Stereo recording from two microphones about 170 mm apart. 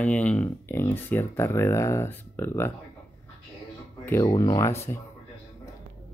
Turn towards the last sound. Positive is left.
turn(degrees=15)  # may be behind; listen again after turning